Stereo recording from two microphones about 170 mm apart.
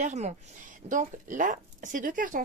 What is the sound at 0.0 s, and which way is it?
A woman's voice, 45° right (ahead or behind).